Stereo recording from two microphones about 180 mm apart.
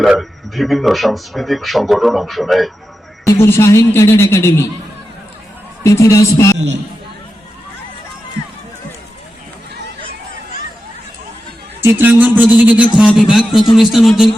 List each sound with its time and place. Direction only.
0.0 s speech: centre (ahead or behind)
3.4 s a man's voice: 15° left (ahead or behind)
5.8 s a man's voice: 15° left (ahead or behind)
11.8 s a man's voice: 15° right (ahead or behind)